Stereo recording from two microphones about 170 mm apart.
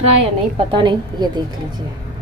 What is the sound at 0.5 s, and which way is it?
A woman's voice, 30° right (ahead or behind).